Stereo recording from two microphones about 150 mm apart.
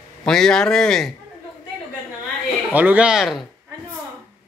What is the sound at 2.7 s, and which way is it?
Speech, 10° right (ahead or behind).